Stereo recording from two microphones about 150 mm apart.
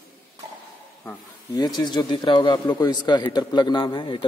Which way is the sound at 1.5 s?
25° left (ahead or behind).